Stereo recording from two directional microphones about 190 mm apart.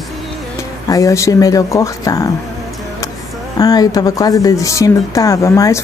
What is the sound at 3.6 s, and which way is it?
Speech, 20° left (ahead or behind).